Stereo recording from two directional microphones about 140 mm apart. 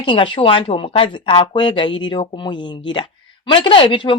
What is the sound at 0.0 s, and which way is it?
Speech, 35° left (ahead or behind).